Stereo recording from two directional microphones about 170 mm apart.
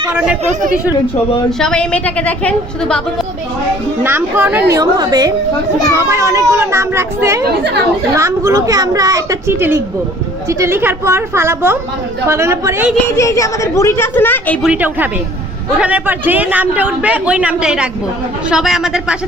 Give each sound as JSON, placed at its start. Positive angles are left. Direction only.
{"t": 0.1, "sound": "a woman's voice", "side_deg": -5}
{"t": 0.4, "sound": "speech", "side_deg": -50}
{"t": 1.5, "sound": "a woman's voice", "side_deg": 5}
{"t": 4.0, "sound": "a man's voice", "side_deg": -10}
{"t": 4.7, "sound": "a woman's voice", "side_deg": -20}
{"t": 7.4, "sound": "speech", "side_deg": -85}
{"t": 8.1, "sound": "a woman's voice", "side_deg": -15}
{"t": 13.1, "sound": "a woman's voice", "side_deg": 20}
{"t": 14.6, "sound": "a man's voice", "side_deg": -10}